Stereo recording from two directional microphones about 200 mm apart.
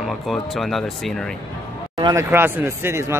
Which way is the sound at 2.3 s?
10° right (ahead or behind).